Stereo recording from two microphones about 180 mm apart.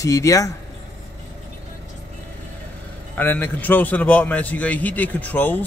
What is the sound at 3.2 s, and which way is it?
A man's voice, 10° left (ahead or behind).